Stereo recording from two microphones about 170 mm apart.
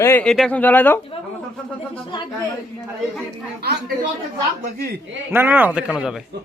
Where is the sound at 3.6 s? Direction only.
70° right (ahead or behind).